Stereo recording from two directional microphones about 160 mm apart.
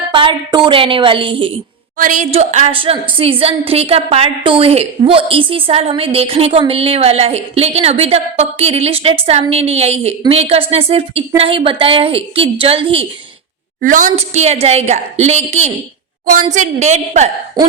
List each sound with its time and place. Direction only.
0.1 s a woman's voice: 30° right (ahead or behind)
2.0 s a woman's voice: 55° right (ahead or behind)
2.3 s a woman's voice: 45° right (ahead or behind)
13.8 s a woman's voice: 55° right (ahead or behind)